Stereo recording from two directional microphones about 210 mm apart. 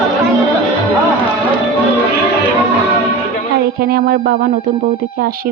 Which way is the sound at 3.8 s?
45° right (ahead or behind).